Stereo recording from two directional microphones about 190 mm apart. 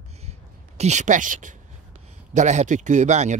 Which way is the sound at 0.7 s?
35° right (ahead or behind).